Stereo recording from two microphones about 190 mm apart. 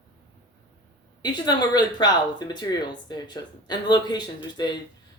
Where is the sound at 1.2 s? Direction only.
20° left (ahead or behind).